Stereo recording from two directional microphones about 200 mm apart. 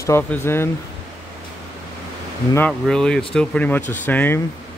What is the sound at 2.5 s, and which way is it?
Speech, 5° left (ahead or behind).